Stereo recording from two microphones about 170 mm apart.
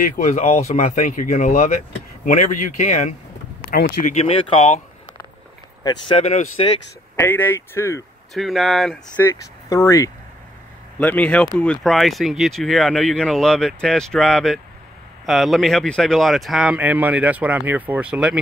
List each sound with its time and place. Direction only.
0.0 s speech: 45° left (ahead or behind)
5.9 s speech: 35° left (ahead or behind)
7.2 s speech: 10° left (ahead or behind)
8.4 s speech: centre (ahead or behind); by 10.1 s 20° left (ahead or behind)
11.0 s speech: 10° left (ahead or behind)